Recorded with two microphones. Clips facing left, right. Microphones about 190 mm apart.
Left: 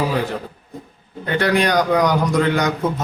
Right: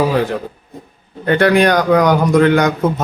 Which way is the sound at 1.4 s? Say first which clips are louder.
Right 4 dB; 55° right (ahead or behind).